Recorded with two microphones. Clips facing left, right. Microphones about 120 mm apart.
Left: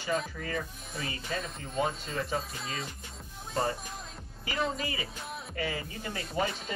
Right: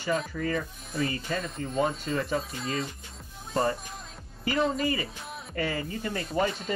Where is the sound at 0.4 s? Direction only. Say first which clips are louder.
Right 5 dB; 45° right (ahead or behind).